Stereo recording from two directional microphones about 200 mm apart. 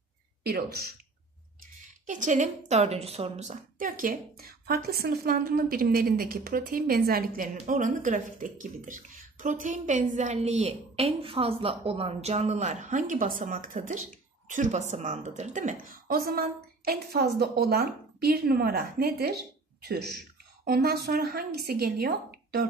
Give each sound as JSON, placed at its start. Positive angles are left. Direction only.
{"t": 0.4, "sound": "a woman's voice", "side_deg": -50}
{"t": 2.0, "sound": "a woman's voice", "side_deg": -40}